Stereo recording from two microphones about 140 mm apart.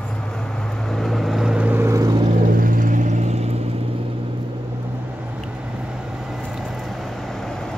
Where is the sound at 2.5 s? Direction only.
80° right; by 3.5 s 50° right (ahead or behind).